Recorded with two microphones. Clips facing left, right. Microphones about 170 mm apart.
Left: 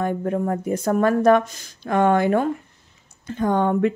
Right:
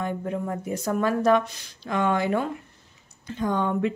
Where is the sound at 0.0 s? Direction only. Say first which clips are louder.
Left 6 dB; 50° left (ahead or behind).